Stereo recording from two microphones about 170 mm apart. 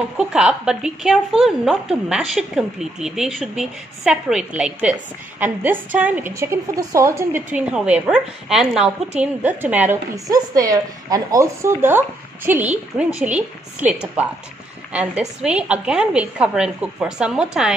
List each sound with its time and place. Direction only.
0.2 s a woman's voice: 5° right (ahead or behind)